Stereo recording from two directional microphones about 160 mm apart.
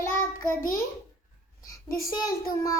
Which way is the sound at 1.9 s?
20° left (ahead or behind).